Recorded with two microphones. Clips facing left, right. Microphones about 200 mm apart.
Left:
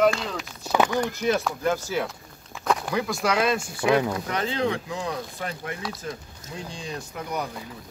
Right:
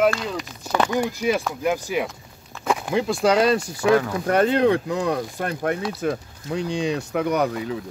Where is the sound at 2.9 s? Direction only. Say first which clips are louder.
Right 6 dB; 25° right (ahead or behind).